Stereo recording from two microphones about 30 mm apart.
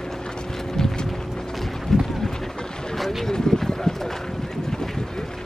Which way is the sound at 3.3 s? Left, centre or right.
Centre.